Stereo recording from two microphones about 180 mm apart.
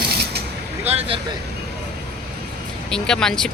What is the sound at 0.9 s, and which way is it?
Speech, 35° right (ahead or behind).